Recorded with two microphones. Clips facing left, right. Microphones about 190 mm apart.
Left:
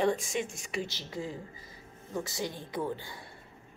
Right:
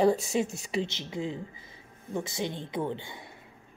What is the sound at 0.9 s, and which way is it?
A woman's voice, 20° right (ahead or behind).